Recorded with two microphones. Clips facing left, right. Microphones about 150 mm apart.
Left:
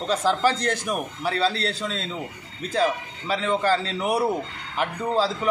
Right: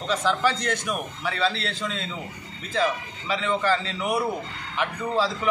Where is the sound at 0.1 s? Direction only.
35° left (ahead or behind).